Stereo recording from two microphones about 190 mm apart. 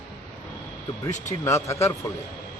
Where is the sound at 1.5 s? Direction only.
15° left (ahead or behind).